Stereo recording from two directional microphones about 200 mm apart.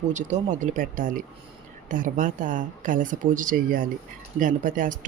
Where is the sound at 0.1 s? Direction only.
35° right (ahead or behind).